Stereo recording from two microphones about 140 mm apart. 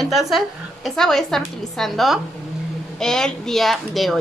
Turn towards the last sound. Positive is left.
turn(degrees=0)  # may be behind; listen again after turning